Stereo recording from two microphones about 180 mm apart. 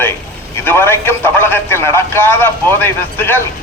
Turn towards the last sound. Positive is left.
turn(degrees=10)  # may be behind; listen again after turning